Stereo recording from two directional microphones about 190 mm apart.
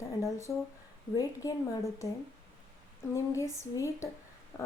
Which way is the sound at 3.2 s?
15° left (ahead or behind).